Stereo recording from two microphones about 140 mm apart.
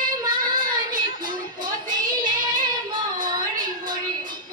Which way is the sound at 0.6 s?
80° right.